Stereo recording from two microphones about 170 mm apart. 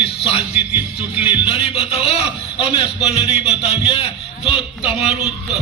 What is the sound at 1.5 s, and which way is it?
Speech, 35° left (ahead or behind).